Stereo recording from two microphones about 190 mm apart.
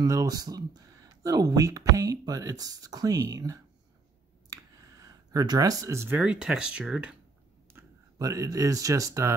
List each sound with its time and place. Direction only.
0.0 s speech: 20° right (ahead or behind)
7.7 s speech: 15° right (ahead or behind)